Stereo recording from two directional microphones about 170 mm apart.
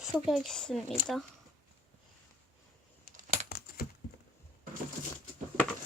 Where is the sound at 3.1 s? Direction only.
45° right (ahead or behind).